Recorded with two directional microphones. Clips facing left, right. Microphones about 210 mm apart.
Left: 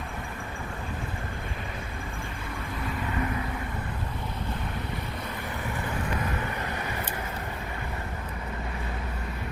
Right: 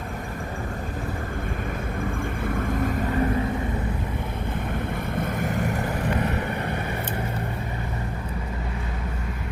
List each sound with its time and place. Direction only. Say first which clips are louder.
2.4 s vehicle: right 10 dB; 50° right (ahead or behind)
5.1 s vehicle: right 9 dB; 50° right (ahead or behind)